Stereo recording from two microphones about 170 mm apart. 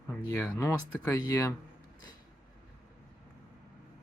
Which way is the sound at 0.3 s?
15° left (ahead or behind).